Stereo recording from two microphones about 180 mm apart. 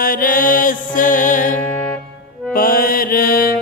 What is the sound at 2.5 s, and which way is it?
Mantra, 55° left (ahead or behind).